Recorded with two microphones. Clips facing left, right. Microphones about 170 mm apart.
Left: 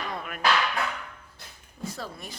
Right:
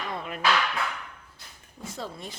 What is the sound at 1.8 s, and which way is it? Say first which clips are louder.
Speech: even; 25° right (ahead or behind).